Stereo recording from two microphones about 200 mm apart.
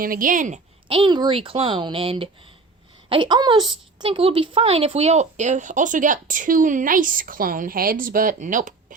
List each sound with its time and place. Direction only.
0.0 s a woman's voice: 45° right (ahead or behind)